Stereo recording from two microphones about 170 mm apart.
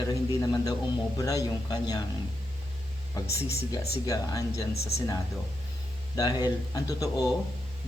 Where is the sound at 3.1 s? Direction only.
20° left (ahead or behind).